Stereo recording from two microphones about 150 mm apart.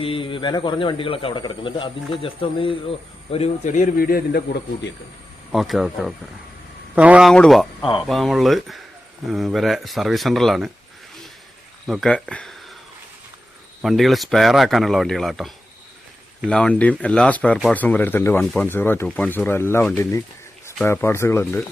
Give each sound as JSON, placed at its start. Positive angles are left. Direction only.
{"t": 0.0, "sound": "speech", "side_deg": 35}
{"t": 3.3, "sound": "a man's voice", "side_deg": 50}
{"t": 5.5, "sound": "a man's voice", "side_deg": 0}
{"t": 7.3, "sound": "a man's voice", "side_deg": 0}
{"t": 11.9, "sound": "a man's voice", "side_deg": 0}
{"t": 13.8, "sound": "a man's voice", "side_deg": 0}